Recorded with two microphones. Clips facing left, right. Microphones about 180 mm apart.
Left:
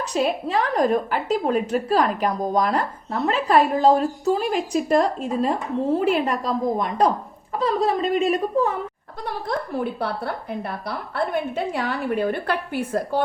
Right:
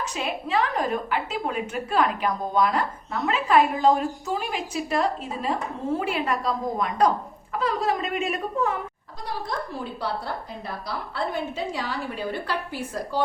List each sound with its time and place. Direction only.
0.0 s a woman's voice: 40° left (ahead or behind)
9.7 s a woman's voice: 60° left (ahead or behind)